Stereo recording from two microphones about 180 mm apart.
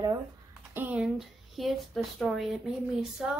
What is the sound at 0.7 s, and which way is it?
Speech, 5° right (ahead or behind).